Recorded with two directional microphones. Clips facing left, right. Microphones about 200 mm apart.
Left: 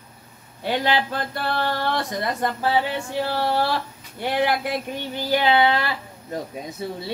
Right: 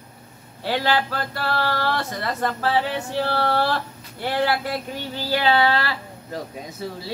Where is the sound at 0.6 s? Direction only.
20° left (ahead or behind).